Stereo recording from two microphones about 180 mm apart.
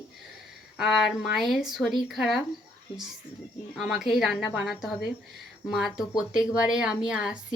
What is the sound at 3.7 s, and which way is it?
Speech, centre (ahead or behind).